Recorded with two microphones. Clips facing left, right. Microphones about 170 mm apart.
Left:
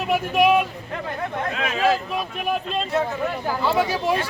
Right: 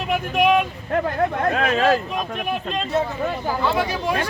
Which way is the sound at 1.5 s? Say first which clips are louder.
Right 1 dB; 50° right (ahead or behind).